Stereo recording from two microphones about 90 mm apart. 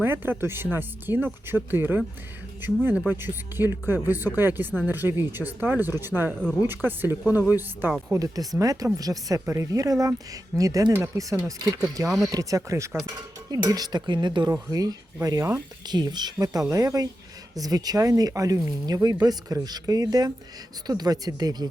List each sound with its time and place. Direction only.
0.0 s speech: 25° right (ahead or behind)
8.2 s speech: 40° right (ahead or behind)
12.0 s speech: centre (ahead or behind)
12.3 s speech: 40° right (ahead or behind)
13.7 s speech: 45° right (ahead or behind)
14.5 s speech: 40° right (ahead or behind)
15.9 s speech: 50° right (ahead or behind)